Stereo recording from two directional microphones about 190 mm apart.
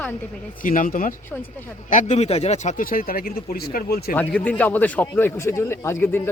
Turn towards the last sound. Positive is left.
turn(degrees=10)  # may be behind; listen again after turning